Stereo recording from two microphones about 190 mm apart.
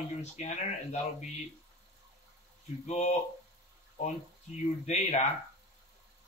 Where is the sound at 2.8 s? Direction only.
35° left (ahead or behind).